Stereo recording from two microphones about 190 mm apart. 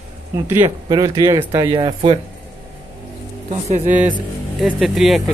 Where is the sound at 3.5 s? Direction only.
35° right (ahead or behind).